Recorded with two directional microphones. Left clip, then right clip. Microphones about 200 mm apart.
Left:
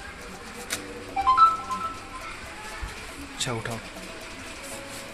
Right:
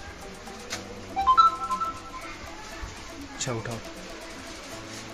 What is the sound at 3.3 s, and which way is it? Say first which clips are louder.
Speech: left 2 dB; 10° right (ahead or behind).